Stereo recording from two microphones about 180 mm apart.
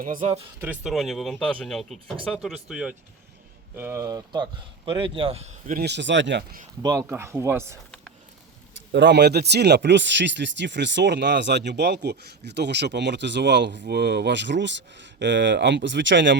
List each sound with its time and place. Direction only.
0.0 s speech: 45° right (ahead or behind)
0.6 s speech: 5° right (ahead or behind); by 5.7 s 35° right (ahead or behind)
5.7 s speech: 70° right (ahead or behind); by 6.4 s 90° right
6.8 s speech: 15° right (ahead or behind)
8.9 s speech: 70° right (ahead or behind); by 16.4 s 90° right